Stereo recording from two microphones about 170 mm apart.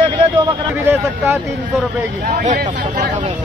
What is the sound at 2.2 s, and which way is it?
Speech, 60° right (ahead or behind).